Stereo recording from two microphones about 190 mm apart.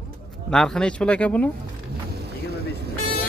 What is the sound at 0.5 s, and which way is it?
Speech, 5° left (ahead or behind).